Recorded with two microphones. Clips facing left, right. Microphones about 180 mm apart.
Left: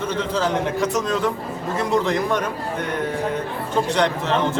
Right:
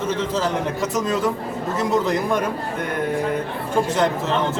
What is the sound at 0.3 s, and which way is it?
A man's voice, centre (ahead or behind).